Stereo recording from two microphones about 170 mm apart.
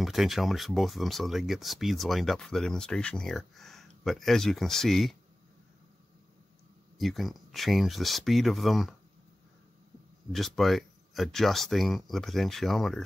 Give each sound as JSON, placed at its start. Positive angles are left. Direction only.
{"t": 0.0, "sound": "speech", "side_deg": 0}
{"t": 7.0, "sound": "speech", "side_deg": 0}
{"t": 10.3, "sound": "speech", "side_deg": 0}